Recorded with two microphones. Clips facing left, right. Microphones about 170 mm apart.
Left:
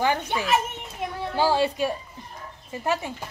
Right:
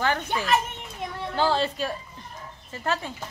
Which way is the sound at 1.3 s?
10° left (ahead or behind).